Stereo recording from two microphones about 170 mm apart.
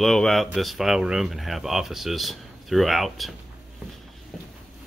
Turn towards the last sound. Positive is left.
turn(degrees=0)  # may be behind; listen again after turning